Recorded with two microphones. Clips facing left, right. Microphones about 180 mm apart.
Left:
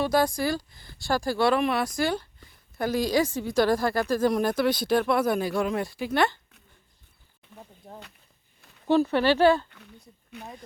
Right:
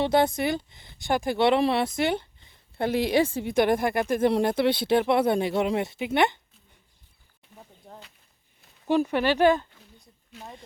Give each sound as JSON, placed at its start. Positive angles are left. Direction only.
{"t": 0.0, "sound": "speech", "side_deg": -25}
{"t": 8.9, "sound": "speech", "side_deg": -15}
{"t": 9.6, "sound": "a sound", "side_deg": 70}